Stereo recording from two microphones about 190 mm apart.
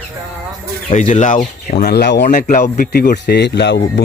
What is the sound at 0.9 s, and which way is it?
Speech, 40° left (ahead or behind).